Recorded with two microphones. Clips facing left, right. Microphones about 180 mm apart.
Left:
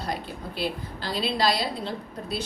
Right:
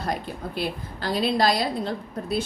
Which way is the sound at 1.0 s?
50° right (ahead or behind).